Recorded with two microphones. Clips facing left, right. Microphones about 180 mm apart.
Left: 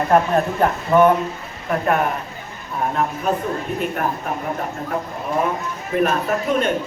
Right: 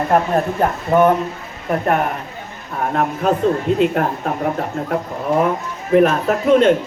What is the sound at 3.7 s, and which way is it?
Speech, 75° right (ahead or behind).